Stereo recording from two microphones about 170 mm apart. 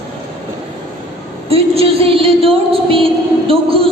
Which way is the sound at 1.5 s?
35° right (ahead or behind).